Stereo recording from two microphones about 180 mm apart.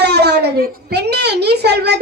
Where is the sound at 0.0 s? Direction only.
65° right (ahead or behind).